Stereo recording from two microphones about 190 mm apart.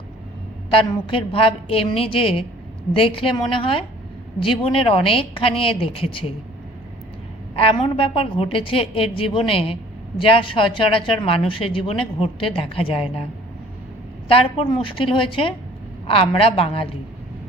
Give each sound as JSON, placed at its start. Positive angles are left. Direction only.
{"t": 0.7, "sound": "speech", "side_deg": 30}
{"t": 7.5, "sound": "speech", "side_deg": 30}
{"t": 14.3, "sound": "speech", "side_deg": 30}